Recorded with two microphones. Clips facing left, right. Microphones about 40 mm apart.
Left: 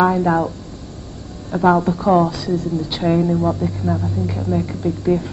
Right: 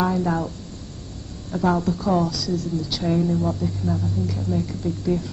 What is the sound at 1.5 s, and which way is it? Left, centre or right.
A woman's voice, left.